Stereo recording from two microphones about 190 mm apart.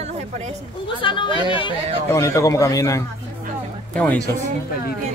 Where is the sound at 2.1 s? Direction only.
15° left (ahead or behind).